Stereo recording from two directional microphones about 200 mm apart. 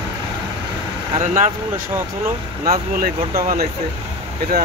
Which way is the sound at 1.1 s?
35° right (ahead or behind).